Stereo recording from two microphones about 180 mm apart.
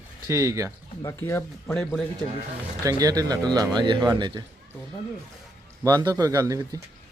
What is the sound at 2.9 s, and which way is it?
Speech, 20° right (ahead or behind).